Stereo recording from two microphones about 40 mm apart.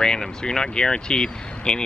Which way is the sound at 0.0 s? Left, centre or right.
Centre.